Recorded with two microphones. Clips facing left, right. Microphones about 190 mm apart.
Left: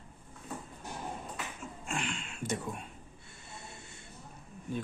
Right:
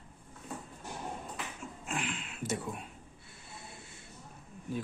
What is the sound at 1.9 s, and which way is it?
Speech, 5° right (ahead or behind).